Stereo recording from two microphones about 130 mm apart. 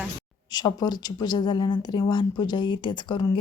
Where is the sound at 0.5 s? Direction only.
35° left (ahead or behind).